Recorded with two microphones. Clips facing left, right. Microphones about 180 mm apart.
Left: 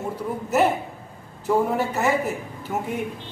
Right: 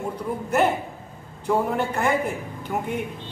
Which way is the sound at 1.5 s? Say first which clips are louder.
Left 1 dB; 5° left (ahead or behind).